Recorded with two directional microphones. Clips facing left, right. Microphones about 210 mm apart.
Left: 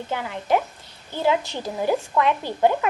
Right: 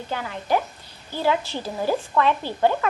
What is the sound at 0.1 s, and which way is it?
A woman's voice, 20° left (ahead or behind).